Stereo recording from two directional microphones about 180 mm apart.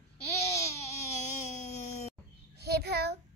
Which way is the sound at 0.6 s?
40° left (ahead or behind).